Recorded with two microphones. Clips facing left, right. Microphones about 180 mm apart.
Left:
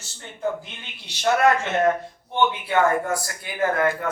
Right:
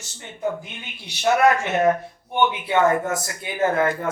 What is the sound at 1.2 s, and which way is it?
Speech, 10° right (ahead or behind).